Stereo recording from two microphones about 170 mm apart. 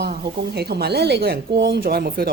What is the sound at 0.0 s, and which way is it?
A woman's voice, 70° right (ahead or behind).